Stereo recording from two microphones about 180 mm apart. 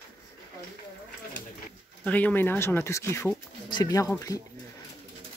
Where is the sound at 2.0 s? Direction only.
10° left (ahead or behind).